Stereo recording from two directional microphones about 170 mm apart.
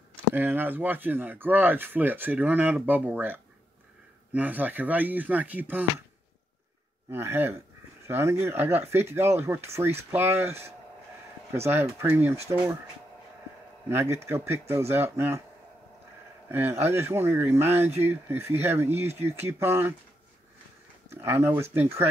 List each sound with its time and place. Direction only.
0.3 s speech: 10° right (ahead or behind)
7.1 s speech: 15° right (ahead or behind)
13.8 s speech: 15° right (ahead or behind)
16.4 s speech: 10° right (ahead or behind)
21.1 s speech: 15° right (ahead or behind)